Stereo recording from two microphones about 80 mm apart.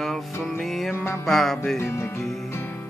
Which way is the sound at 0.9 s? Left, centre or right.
Left.